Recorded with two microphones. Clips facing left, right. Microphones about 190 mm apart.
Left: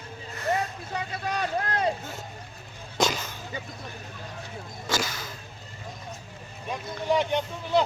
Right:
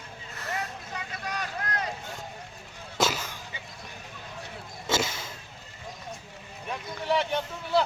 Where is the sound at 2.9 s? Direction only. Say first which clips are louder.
Left 1 dB; 5° right (ahead or behind).